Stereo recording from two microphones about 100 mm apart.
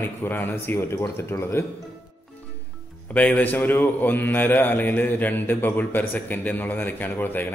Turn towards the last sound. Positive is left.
turn(degrees=20)  # may be behind; listen again after turning